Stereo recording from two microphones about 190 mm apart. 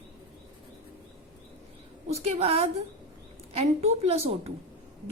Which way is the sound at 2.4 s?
30° right (ahead or behind).